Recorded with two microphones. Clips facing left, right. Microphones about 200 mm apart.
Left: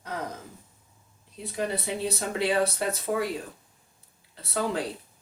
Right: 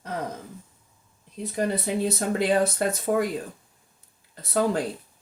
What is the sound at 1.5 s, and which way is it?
Speech, 45° right (ahead or behind).